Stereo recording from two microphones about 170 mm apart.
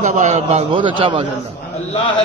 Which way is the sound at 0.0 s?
40° right (ahead or behind).